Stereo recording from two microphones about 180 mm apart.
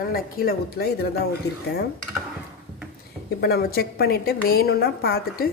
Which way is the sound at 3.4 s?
60° left (ahead or behind).